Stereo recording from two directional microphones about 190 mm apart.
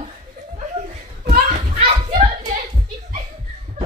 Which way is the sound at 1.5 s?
30° right (ahead or behind).